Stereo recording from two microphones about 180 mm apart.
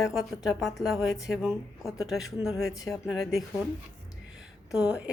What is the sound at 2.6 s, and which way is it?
Speech, 20° left (ahead or behind).